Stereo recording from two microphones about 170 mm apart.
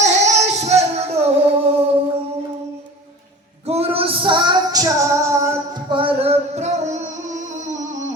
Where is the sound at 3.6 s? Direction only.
35° right (ahead or behind); by 5.8 s 15° right (ahead or behind).